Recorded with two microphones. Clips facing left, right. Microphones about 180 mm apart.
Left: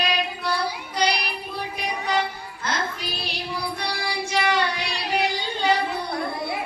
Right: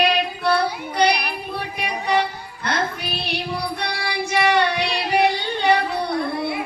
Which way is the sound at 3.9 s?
65° right (ahead or behind).